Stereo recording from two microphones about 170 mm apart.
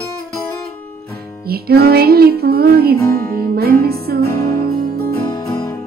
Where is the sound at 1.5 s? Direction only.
65° right (ahead or behind).